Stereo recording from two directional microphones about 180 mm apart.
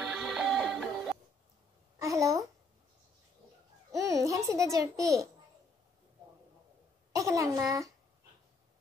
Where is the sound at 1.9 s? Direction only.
15° right (ahead or behind).